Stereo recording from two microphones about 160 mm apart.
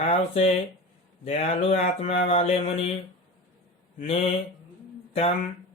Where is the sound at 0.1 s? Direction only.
40° left (ahead or behind).